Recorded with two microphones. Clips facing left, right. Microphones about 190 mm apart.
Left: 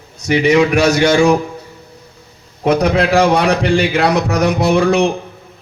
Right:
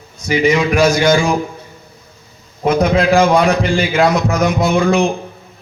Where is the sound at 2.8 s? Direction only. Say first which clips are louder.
Right 1 dB; 65° left (ahead or behind).